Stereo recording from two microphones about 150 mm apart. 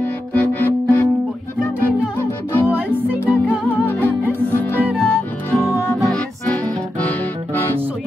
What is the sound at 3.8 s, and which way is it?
Music, 15° left (ahead or behind).